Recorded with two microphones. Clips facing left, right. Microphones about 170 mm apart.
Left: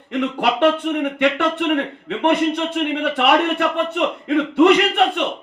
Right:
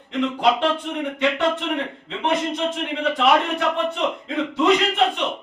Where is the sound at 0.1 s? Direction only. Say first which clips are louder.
Even; 65° left (ahead or behind).